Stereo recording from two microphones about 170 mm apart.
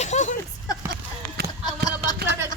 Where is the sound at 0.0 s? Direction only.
45° left (ahead or behind).